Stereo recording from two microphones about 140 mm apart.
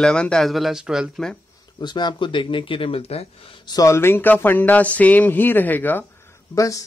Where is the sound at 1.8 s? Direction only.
30° left (ahead or behind).